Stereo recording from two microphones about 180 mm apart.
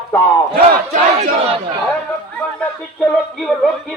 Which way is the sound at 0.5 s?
55° right (ahead or behind).